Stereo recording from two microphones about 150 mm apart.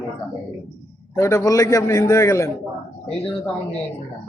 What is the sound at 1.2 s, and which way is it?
A man's voice, 20° left (ahead or behind).